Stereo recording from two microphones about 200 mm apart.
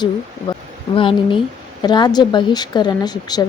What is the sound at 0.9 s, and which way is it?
Speech, 25° left (ahead or behind).